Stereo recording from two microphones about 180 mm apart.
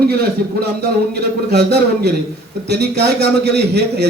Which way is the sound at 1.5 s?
65° right (ahead or behind).